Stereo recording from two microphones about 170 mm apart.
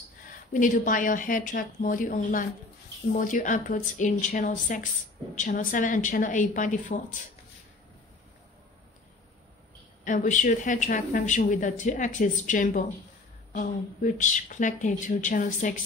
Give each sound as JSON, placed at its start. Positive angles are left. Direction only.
{"t": 0.5, "sound": "speech", "side_deg": 50}
{"t": 10.0, "sound": "speech", "side_deg": 50}